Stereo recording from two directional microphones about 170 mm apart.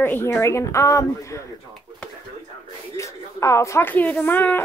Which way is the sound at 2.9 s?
15° left (ahead or behind).